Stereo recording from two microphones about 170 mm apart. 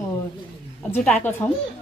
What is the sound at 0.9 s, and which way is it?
Speech, 10° left (ahead or behind).